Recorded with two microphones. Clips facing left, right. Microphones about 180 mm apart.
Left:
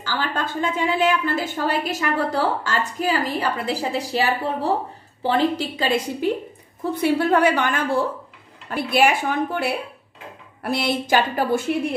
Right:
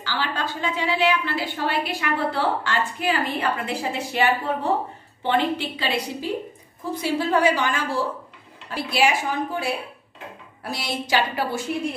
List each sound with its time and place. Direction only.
0.0 s a woman's voice: 45° left (ahead or behind)
6.9 s a woman's voice: 60° left (ahead or behind)